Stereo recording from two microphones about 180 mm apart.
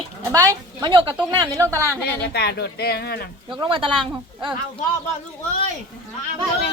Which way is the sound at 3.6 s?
30° right (ahead or behind).